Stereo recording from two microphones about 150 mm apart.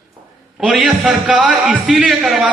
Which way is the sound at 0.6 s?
5° right (ahead or behind).